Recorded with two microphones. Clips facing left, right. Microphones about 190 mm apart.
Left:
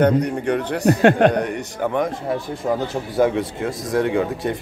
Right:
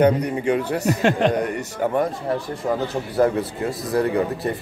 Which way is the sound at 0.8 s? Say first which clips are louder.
Left 6 dB; 55° left (ahead or behind).